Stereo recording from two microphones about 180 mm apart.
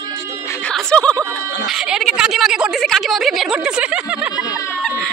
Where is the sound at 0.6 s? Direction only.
5° left (ahead or behind).